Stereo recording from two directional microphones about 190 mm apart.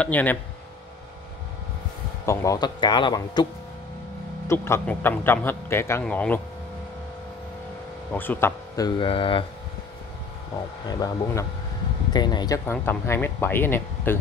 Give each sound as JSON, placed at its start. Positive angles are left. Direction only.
{"t": 0.0, "sound": "a man's voice", "side_deg": 10}
{"t": 2.2, "sound": "speech", "side_deg": 15}
{"t": 4.5, "sound": "a man's voice", "side_deg": 15}
{"t": 8.1, "sound": "speech", "side_deg": 10}
{"t": 10.9, "sound": "a man's voice", "side_deg": 20}